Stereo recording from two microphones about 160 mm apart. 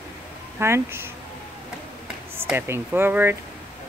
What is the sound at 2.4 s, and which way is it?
Speech, 15° right (ahead or behind).